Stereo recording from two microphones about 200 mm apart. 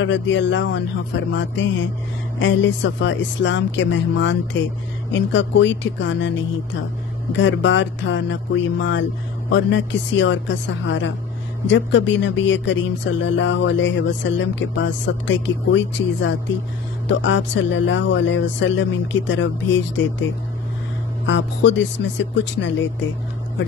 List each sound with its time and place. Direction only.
0.0 s speech: 65° left (ahead or behind)
7.3 s speech: 65° left (ahead or behind)
21.3 s speech: 65° left (ahead or behind)